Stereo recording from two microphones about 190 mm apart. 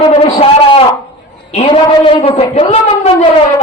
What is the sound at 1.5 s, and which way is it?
A man's voice, 30° left (ahead or behind).